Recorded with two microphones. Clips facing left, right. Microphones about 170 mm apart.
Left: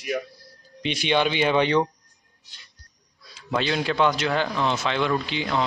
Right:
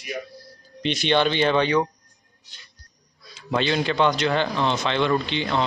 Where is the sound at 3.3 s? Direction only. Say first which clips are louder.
Right 2 dB; centre (ahead or behind).